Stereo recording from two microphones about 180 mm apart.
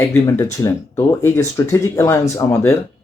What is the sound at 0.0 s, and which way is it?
Speech, 15° left (ahead or behind).